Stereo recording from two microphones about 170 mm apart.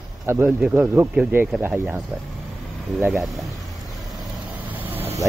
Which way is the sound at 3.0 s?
Centre (ahead or behind).